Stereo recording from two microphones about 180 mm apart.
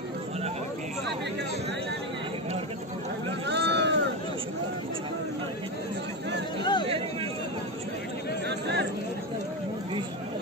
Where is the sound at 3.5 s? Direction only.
75° right (ahead or behind).